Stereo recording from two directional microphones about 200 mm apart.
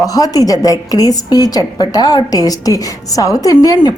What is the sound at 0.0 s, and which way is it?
A woman's voice, 20° left (ahead or behind).